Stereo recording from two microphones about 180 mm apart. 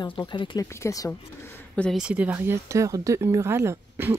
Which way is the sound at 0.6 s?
15° left (ahead or behind).